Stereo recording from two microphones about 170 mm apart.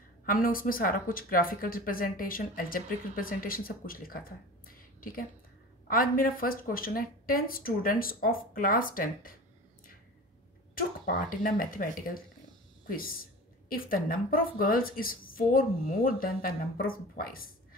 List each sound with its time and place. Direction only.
0.3 s speech: 55° left (ahead or behind)
10.7 s a woman's voice: 55° left (ahead or behind)